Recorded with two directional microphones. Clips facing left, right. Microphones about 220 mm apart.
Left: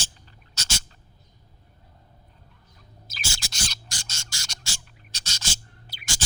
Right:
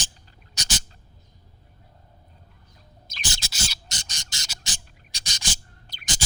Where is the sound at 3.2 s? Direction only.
20° right (ahead or behind).